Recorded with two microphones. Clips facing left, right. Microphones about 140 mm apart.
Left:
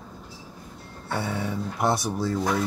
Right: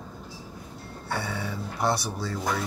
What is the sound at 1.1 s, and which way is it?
Speech, centre (ahead or behind).